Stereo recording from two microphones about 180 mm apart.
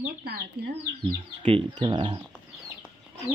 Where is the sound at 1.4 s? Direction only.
30° right (ahead or behind).